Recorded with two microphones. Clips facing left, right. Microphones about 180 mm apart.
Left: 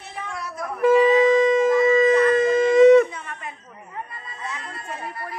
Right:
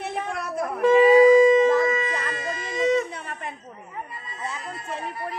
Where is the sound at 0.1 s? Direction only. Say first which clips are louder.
Right 4 dB; 55° right (ahead or behind).